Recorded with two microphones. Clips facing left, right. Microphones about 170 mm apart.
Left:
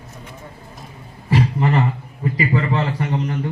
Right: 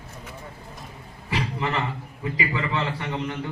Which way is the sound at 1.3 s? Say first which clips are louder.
Left 9 dB; 40° left (ahead or behind).